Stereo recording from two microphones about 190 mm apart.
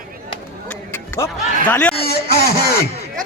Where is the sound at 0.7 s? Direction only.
10° left (ahead or behind).